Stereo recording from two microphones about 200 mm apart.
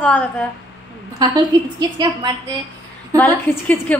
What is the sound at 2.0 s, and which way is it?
Speech, 20° right (ahead or behind).